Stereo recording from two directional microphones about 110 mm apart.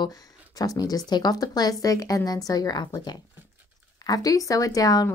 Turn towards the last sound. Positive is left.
turn(degrees=35)  # may be behind; listen again after turning